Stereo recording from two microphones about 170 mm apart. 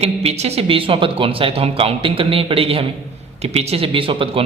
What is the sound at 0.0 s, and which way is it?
A man's voice, 40° right (ahead or behind).